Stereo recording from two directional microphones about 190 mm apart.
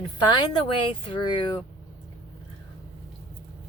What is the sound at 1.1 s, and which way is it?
Speech, 25° left (ahead or behind).